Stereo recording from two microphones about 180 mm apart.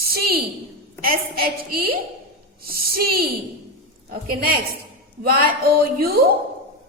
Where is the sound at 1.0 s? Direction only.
55° right (ahead or behind).